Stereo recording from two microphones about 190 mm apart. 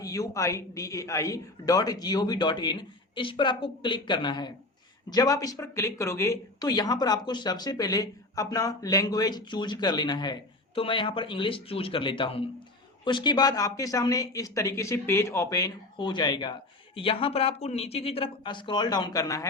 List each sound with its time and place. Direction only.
0.0 s speech: 15° left (ahead or behind)